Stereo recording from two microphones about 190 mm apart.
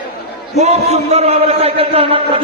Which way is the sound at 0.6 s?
35° right (ahead or behind).